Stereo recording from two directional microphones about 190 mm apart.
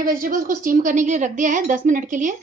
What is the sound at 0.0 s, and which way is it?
A woman's voice, 50° right (ahead or behind).